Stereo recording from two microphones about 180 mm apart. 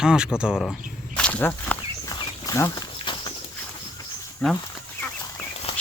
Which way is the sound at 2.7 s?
25° left (ahead or behind).